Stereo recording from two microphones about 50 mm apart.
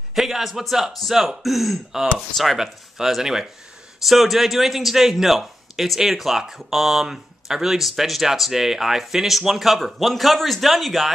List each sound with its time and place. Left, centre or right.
0.1 s a man's voice: centre